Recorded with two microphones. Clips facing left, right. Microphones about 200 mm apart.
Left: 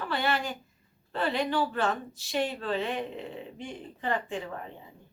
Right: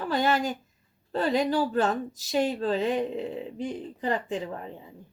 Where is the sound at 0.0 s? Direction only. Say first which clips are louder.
Right 5 dB; 40° right (ahead or behind).